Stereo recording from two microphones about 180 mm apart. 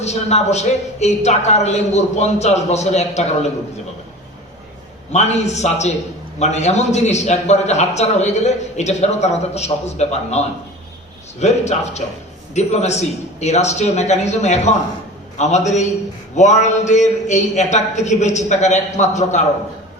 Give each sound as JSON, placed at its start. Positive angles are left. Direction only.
{"t": 0.0, "sound": "a man's voice", "side_deg": 40}
{"t": 5.1, "sound": "a man's voice", "side_deg": 40}